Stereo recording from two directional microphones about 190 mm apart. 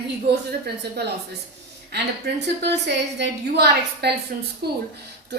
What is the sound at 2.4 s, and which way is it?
A woman's voice, 60° right (ahead or behind).